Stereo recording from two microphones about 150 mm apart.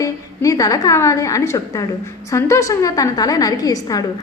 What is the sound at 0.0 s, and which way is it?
A woman's voice, 25° left (ahead or behind).